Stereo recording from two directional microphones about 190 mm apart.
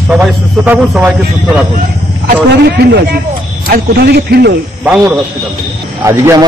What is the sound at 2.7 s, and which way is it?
A man's voice, 60° right (ahead or behind).